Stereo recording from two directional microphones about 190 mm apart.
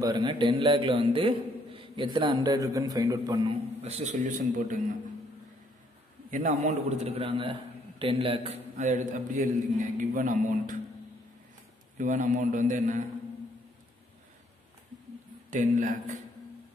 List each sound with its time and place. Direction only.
0.0 s a man's voice: 20° right (ahead or behind)
3.8 s a man's voice: 35° right (ahead or behind)
6.3 s a man's voice: 35° right (ahead or behind)
12.0 s a man's voice: 45° right (ahead or behind)
15.5 s a man's voice: 45° right (ahead or behind)